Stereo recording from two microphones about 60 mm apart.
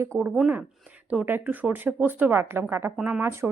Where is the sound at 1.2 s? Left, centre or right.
Right.